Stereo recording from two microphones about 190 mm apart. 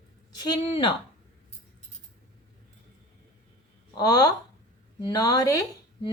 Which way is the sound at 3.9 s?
20° left (ahead or behind).